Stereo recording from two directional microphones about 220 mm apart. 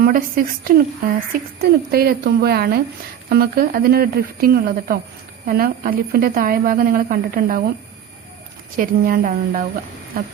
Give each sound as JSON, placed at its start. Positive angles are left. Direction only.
{"t": 0.0, "sound": "a woman's voice", "side_deg": -40}
{"t": 8.8, "sound": "a woman's voice", "side_deg": -40}